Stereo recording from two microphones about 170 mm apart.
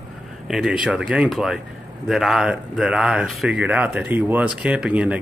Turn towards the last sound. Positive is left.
turn(degrees=-5)  # may be behind; listen again after turning